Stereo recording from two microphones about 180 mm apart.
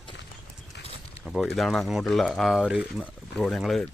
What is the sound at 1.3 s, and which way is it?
Speech, centre (ahead or behind).